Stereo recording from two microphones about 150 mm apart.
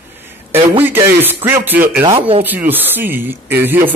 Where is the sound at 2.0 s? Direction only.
40° right (ahead or behind).